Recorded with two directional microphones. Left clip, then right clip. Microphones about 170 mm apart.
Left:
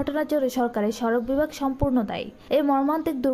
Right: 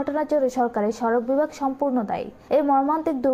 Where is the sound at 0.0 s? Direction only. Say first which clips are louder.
Right 2 dB; 15° left (ahead or behind).